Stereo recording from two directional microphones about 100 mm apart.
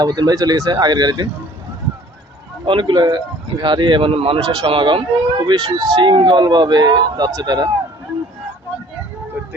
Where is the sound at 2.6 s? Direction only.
55° right (ahead or behind).